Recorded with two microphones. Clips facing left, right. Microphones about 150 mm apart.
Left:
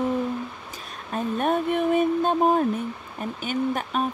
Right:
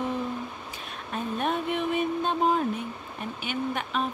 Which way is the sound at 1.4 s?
45° left (ahead or behind).